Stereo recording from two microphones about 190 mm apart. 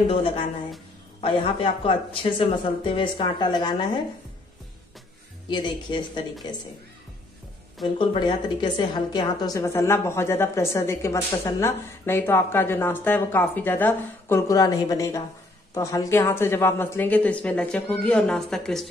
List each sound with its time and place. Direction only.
0.1 s speech: 30° left (ahead or behind)
5.5 s speech: 25° left (ahead or behind)
7.8 s a woman's voice: 25° left (ahead or behind); by 18.9 s centre (ahead or behind)